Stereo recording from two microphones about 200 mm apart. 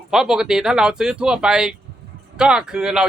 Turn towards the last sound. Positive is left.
turn(degrees=-5)  # may be behind; listen again after turning